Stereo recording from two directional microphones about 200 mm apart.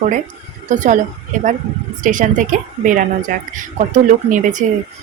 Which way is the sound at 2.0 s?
40° right (ahead or behind).